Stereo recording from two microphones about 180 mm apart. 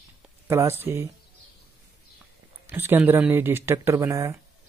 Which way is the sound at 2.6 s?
10° right (ahead or behind).